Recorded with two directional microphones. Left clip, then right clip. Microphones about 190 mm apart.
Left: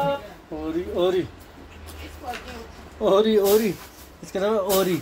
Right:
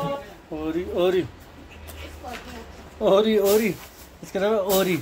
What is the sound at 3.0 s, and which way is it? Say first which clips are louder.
Speech: even; centre (ahead or behind).